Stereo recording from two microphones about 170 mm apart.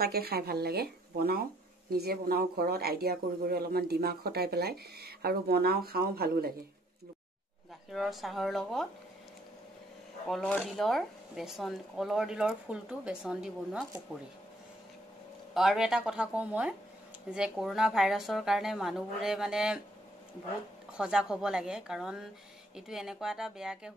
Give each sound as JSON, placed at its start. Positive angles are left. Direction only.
{"t": 0.0, "sound": "speech", "side_deg": -65}
{"t": 7.9, "sound": "speech", "side_deg": 0}
{"t": 10.2, "sound": "speech", "side_deg": 5}
{"t": 15.5, "sound": "speech", "side_deg": 0}
{"t": 20.9, "sound": "speech", "side_deg": -5}